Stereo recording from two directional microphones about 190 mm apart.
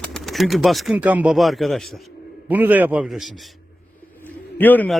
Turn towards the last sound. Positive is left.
turn(degrees=10)  # may be behind; listen again after turning